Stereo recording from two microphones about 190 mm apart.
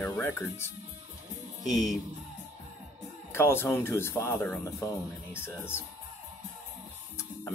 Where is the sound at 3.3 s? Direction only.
15° left (ahead or behind).